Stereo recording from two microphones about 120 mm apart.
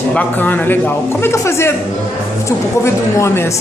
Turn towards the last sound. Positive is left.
turn(degrees=20)  # may be behind; listen again after turning